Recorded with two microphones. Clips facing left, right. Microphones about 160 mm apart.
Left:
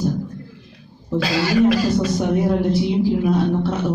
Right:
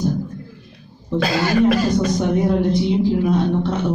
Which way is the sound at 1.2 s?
50° right (ahead or behind).